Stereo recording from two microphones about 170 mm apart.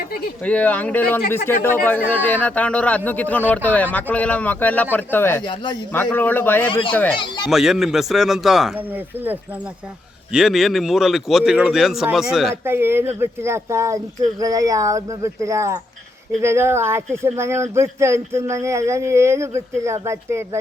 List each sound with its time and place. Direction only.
0.4 s speech: 10° left (ahead or behind)
5.4 s speech: 25° left (ahead or behind)
5.9 s speech: 10° left (ahead or behind)
7.2 s speech: 25° left (ahead or behind)
7.5 s speech: centre (ahead or behind)
12.6 s speech: 15° right (ahead or behind)